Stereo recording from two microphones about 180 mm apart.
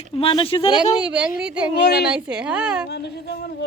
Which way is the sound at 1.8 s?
65° left (ahead or behind).